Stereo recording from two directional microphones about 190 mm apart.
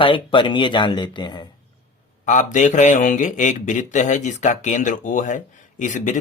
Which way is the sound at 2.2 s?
40° left (ahead or behind).